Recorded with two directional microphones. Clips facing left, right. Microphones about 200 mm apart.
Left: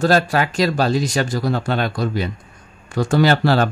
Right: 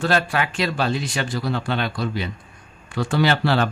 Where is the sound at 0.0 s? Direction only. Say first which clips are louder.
Left 5 dB; 40° left (ahead or behind).